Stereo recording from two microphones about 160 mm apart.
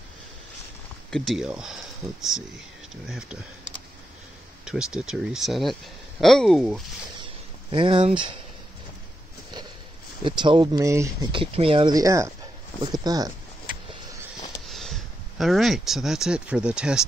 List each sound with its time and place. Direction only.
1.1 s speech: centre (ahead or behind)
3.1 s speech: 5° right (ahead or behind)
4.6 s speech: 5° right (ahead or behind)
7.7 s speech: 35° right (ahead or behind)
10.2 s speech: 30° right (ahead or behind)
10.8 s speech: 20° right (ahead or behind)
11.3 s speech: 35° right (ahead or behind)
14.7 s speech: centre (ahead or behind)